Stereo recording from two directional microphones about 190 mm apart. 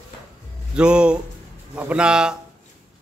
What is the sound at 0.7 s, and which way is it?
A man's voice, 5° right (ahead or behind).